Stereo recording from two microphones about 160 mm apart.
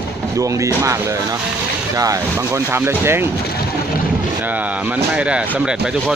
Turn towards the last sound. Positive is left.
turn(degrees=-5)  # may be behind; listen again after turning